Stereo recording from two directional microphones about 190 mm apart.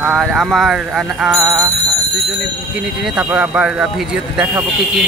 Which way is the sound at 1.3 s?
15° right (ahead or behind).